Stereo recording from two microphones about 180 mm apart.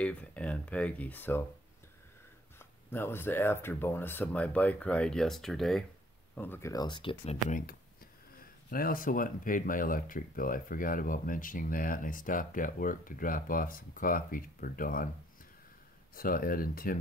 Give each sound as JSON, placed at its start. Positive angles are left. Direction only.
{"t": 0.0, "sound": "speech", "side_deg": 5}
{"t": 2.6, "sound": "speech", "side_deg": 10}
{"t": 7.4, "sound": "speech", "side_deg": 45}
{"t": 16.2, "sound": "speech", "side_deg": 50}